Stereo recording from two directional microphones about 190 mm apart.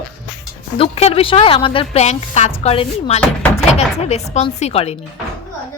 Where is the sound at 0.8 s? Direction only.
35° left (ahead or behind).